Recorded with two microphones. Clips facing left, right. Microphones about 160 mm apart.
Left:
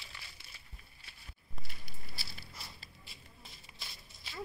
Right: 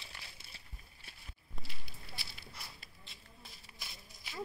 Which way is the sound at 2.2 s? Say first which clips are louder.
Left 2 dB; 35° left (ahead or behind).